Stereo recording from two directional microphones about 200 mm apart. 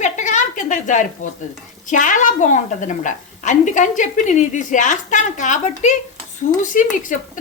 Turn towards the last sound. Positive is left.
turn(degrees=40)  # may be behind; listen again after turning